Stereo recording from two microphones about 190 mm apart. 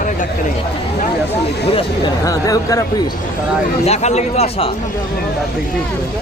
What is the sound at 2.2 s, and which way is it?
Speech, 20° left (ahead or behind).